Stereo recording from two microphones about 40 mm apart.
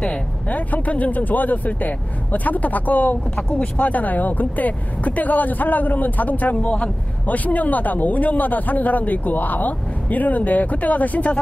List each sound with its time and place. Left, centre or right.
0.0 s speech: left
3.3 s speech: left